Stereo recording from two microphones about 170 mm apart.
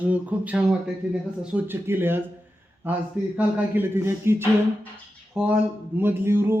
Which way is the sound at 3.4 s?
10° right (ahead or behind).